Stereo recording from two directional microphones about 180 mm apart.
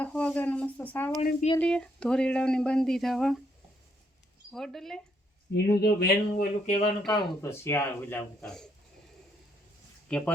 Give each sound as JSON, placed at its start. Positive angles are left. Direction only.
{"t": 0.0, "sound": "a sound", "side_deg": 5}
{"t": 1.2, "sound": "speech", "side_deg": 45}
{"t": 1.5, "sound": "speech", "side_deg": 5}
{"t": 4.5, "sound": "speech", "side_deg": 0}
{"t": 5.5, "sound": "speech", "side_deg": 70}
{"t": 7.4, "sound": "speech", "side_deg": 15}
{"t": 10.1, "sound": "speech", "side_deg": 5}